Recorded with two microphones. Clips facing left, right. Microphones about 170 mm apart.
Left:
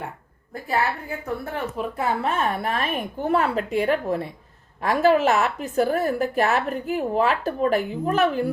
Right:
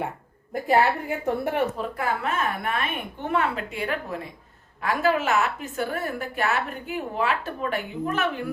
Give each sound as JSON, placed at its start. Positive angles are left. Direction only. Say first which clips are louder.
{"t": 0.7, "sound": "a woman's voice", "louder": "right 4 dB", "side_deg": -20}
{"t": 2.0, "sound": "a woman's voice", "louder": "left 3 dB", "side_deg": 30}